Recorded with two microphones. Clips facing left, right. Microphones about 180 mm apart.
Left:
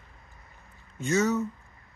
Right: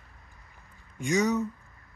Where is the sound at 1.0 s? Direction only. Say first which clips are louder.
Even; 15° right (ahead or behind).